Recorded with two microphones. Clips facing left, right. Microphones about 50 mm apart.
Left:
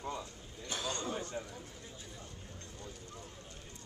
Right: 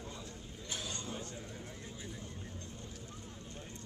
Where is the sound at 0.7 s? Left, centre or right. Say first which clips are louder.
Left 5 dB; left.